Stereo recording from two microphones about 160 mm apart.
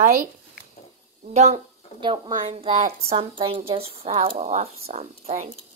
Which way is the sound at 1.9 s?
30° right (ahead or behind).